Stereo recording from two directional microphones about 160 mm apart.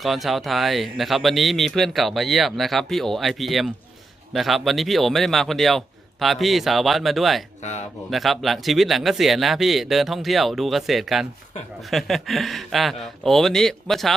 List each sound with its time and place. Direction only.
0.0 s speech: centre (ahead or behind)
7.6 s speech: 45° left (ahead or behind)
8.1 s speech: centre (ahead or behind)